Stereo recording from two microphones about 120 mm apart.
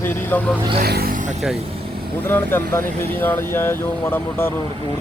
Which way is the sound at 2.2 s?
20° left (ahead or behind).